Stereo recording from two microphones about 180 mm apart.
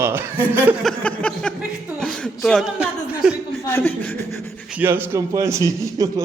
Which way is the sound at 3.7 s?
10° left (ahead or behind).